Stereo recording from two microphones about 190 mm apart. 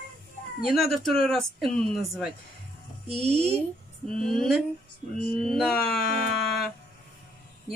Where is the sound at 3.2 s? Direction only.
35° right (ahead or behind).